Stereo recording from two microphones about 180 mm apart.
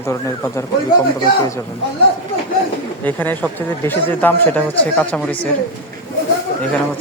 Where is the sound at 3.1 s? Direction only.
10° left (ahead or behind).